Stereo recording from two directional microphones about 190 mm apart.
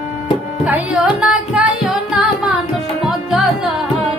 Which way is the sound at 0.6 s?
5° right (ahead or behind).